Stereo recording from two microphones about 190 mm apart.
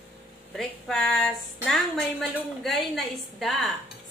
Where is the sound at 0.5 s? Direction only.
Centre (ahead or behind).